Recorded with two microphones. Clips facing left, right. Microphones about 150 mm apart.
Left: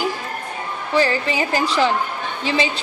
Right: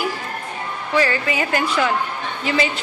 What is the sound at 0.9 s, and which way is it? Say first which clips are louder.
A woman's voice: left 1 dB; 30° left (ahead or behind).